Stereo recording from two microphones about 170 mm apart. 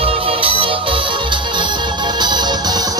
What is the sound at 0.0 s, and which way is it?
Music, 35° right (ahead or behind).